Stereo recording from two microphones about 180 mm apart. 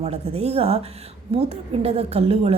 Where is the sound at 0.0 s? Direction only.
35° right (ahead or behind).